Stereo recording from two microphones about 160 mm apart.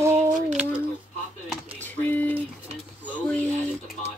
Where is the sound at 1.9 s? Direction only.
10° left (ahead or behind).